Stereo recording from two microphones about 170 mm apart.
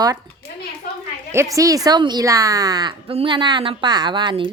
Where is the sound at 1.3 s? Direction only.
20° right (ahead or behind).